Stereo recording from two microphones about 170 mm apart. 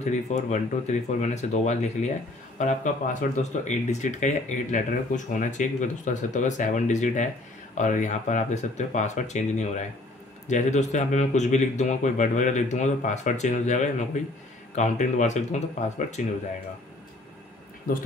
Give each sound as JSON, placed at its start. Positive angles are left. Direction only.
{"t": 0.0, "sound": "speech", "side_deg": 45}